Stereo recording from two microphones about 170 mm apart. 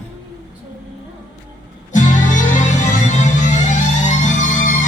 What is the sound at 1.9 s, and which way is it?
Music, 45° left (ahead or behind).